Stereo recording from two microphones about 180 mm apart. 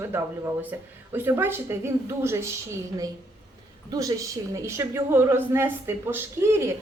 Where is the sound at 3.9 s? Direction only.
20° right (ahead or behind).